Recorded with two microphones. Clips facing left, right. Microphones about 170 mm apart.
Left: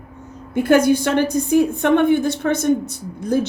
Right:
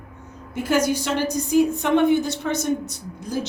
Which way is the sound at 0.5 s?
60° left (ahead or behind).